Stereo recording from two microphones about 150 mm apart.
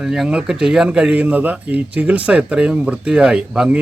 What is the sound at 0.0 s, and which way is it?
Speech, 5° right (ahead or behind).